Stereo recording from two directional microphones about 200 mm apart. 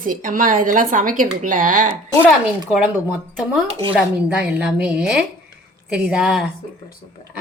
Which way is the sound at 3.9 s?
5° right (ahead or behind).